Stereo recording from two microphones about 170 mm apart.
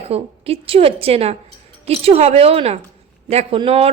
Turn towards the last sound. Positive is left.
turn(degrees=-35)  # may be behind; listen again after turning